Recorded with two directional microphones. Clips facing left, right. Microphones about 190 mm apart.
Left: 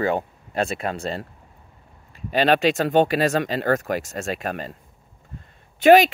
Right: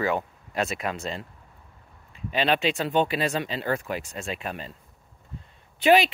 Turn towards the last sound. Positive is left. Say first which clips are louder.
# left 6 dB
turn(degrees=45)  # may be behind; listen again after turning